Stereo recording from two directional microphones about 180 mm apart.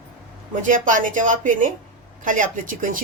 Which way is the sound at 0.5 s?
45° right (ahead or behind).